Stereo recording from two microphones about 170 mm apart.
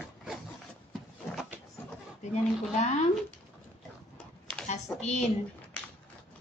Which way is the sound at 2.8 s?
45° left (ahead or behind).